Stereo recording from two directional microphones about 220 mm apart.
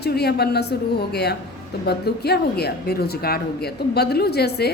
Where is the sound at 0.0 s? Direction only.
45° left (ahead or behind).